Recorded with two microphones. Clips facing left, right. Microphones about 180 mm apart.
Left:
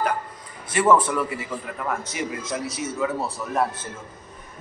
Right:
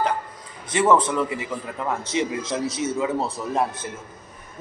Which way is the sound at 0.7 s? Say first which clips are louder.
Even; 20° right (ahead or behind).